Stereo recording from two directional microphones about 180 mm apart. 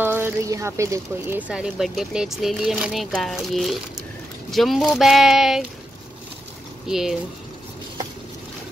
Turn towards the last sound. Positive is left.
turn(degrees=0)  # may be behind; listen again after turning